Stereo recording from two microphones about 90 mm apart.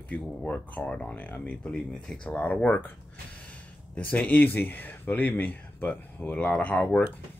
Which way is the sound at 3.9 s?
15° left (ahead or behind).